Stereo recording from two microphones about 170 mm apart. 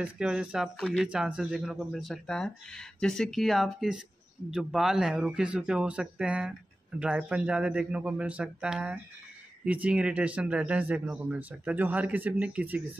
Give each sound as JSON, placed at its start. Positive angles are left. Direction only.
{"t": 0.0, "sound": "speech", "side_deg": -5}